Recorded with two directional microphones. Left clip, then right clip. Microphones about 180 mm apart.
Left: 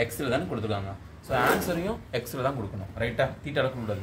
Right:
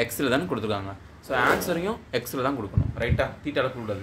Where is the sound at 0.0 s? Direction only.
35° right (ahead or behind).